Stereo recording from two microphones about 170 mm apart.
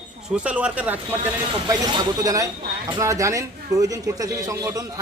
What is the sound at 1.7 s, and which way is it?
A man's voice, 25° right (ahead or behind).